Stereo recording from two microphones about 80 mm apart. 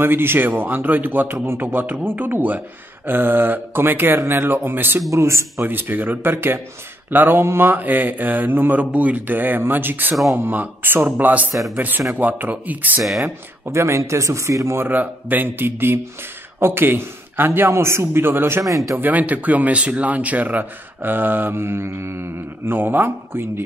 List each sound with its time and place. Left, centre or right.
0.0 s speech: right
5.1 s speech: right
5.6 s speech: right
13.7 s speech: right
14.9 s speech: right